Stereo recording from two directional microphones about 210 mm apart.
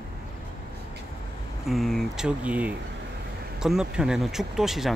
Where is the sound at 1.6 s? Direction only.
Centre (ahead or behind).